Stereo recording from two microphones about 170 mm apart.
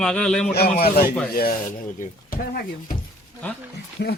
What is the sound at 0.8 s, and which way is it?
Speech, 65° left (ahead or behind).